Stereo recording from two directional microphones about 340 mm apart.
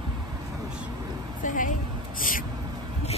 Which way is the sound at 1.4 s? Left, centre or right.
Left.